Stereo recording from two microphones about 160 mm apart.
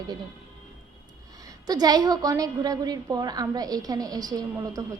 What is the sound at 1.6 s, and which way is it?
A woman's voice, 25° right (ahead or behind).